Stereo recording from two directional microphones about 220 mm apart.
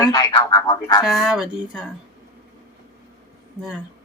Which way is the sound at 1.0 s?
Centre (ahead or behind).